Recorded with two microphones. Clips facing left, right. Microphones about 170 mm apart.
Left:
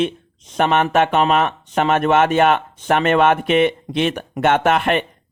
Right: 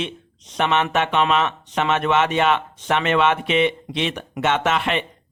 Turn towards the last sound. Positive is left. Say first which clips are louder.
# left 5 dB
turn(degrees=50)  # may be behind; listen again after turning